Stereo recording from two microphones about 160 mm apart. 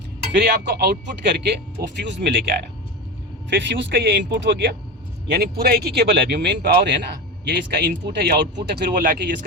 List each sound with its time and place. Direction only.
0.3 s speech: 90° right
5.3 s speech: 75° right (ahead or behind)